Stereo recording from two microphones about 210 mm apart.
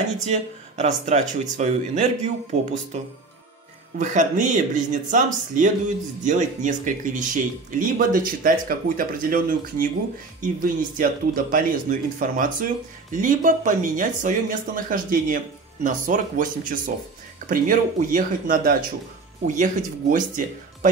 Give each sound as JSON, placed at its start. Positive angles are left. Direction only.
{"t": 0.3, "sound": "speech", "side_deg": -35}